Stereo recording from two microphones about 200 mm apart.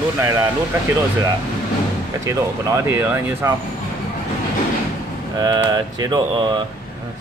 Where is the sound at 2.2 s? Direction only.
15° right (ahead or behind).